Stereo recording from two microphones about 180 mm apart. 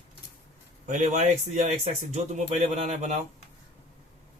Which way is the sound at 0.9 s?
45° right (ahead or behind).